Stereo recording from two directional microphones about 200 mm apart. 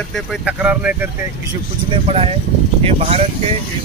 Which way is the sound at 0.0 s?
Centre (ahead or behind).